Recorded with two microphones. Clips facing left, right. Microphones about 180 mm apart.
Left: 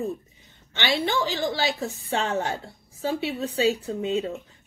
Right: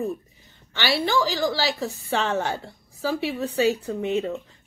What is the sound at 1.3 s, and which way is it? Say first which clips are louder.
A woman's voice: right 2 dB; 35° right (ahead or behind).